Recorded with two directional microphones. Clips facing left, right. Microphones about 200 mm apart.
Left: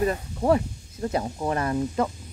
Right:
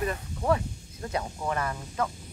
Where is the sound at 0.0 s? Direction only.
35° left (ahead or behind).